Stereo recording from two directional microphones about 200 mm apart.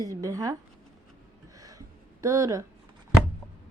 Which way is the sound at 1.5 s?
15° right (ahead or behind).